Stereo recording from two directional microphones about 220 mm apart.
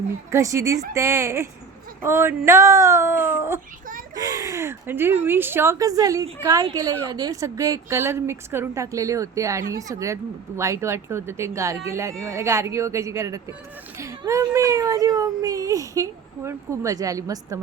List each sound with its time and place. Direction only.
0.3 s speech: 15° right (ahead or behind)